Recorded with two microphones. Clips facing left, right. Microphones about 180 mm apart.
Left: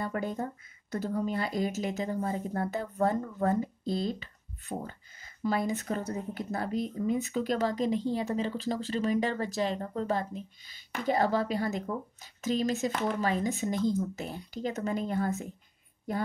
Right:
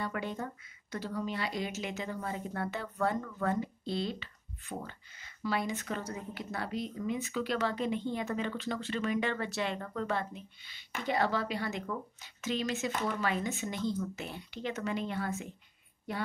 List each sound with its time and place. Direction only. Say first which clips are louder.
0.0 s speech: left 4 dB; 45° left (ahead or behind)